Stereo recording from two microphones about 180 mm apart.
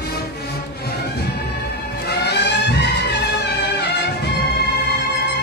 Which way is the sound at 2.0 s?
65° left (ahead or behind).